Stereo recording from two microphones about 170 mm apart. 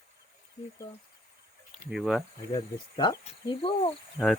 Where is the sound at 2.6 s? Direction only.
25° left (ahead or behind).